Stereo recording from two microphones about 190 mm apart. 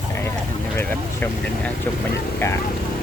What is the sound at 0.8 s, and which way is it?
Speech, 10° left (ahead or behind).